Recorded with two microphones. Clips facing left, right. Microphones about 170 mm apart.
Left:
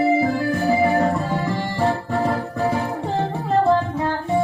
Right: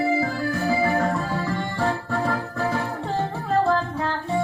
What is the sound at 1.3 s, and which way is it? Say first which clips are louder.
Music: left 3 dB; 20° left (ahead or behind).